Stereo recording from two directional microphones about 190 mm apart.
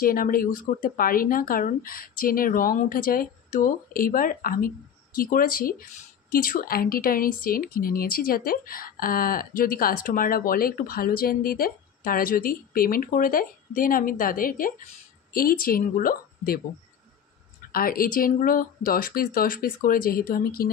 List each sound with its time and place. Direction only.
0.0 s speech: 50° left (ahead or behind)
17.7 s speech: 50° left (ahead or behind)